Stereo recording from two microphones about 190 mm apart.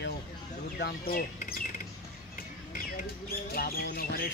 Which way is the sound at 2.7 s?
50° left (ahead or behind).